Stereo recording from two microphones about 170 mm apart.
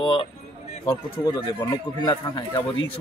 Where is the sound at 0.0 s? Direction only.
30° left (ahead or behind).